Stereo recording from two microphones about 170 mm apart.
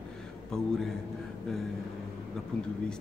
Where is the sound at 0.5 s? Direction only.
5° left (ahead or behind).